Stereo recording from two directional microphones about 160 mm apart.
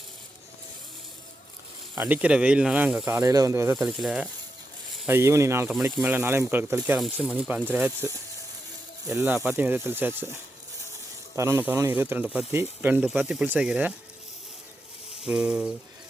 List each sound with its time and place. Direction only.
2.0 s speech: 10° right (ahead or behind)
3.1 s speech: 20° right (ahead or behind)
3.8 s speech: centre (ahead or behind)
5.0 s speech: 15° right (ahead or behind)
9.1 s speech: 15° right (ahead or behind)
11.3 s speech: 15° right (ahead or behind)
15.2 s speech: 5° right (ahead or behind)